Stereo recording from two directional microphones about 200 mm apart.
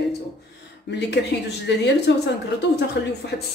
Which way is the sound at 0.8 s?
60° left (ahead or behind).